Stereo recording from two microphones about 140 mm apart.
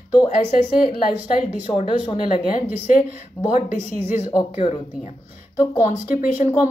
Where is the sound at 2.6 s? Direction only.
15° right (ahead or behind).